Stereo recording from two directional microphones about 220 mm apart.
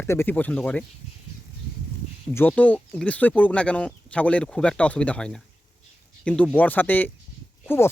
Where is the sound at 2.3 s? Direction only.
5° left (ahead or behind).